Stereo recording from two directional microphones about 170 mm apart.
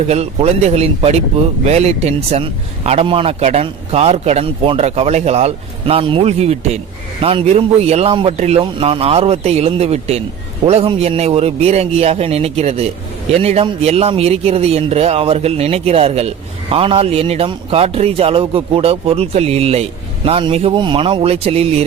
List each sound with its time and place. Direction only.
0.1 s speech: 40° right (ahead or behind)